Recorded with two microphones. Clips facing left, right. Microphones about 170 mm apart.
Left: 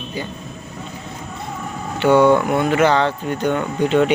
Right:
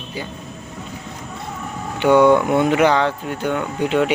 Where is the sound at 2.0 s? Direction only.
15° right (ahead or behind).